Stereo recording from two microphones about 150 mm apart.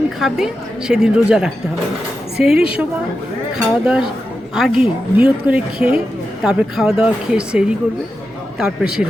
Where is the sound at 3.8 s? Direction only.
5° right (ahead or behind).